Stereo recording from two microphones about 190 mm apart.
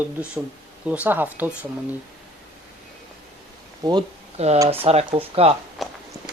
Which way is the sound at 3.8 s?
20° right (ahead or behind).